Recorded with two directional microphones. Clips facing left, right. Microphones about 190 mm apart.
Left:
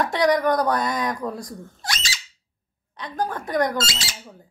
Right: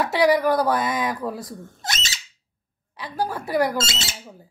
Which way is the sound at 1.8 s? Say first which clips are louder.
Even; 20° right (ahead or behind).